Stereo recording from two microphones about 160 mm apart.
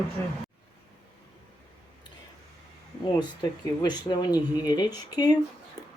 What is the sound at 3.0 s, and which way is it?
Speech, 25° left (ahead or behind).